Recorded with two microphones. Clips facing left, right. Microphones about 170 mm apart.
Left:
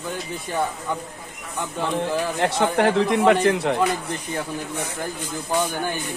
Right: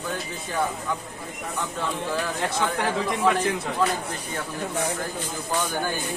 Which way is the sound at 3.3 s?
70° left (ahead or behind).